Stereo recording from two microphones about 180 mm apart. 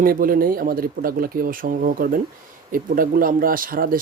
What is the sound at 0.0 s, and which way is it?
Speech, 50° right (ahead or behind).